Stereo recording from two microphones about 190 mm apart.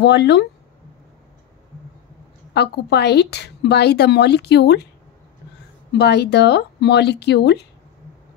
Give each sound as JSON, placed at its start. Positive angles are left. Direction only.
{"t": 0.0, "sound": "a woman's voice", "side_deg": 65}
{"t": 2.5, "sound": "a woman's voice", "side_deg": 60}
{"t": 5.9, "sound": "a woman's voice", "side_deg": 65}